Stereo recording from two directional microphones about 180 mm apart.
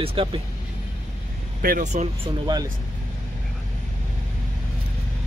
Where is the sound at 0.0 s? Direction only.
30° right (ahead or behind).